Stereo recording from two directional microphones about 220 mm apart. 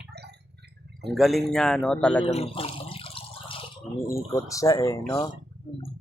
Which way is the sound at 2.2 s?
30° left (ahead or behind).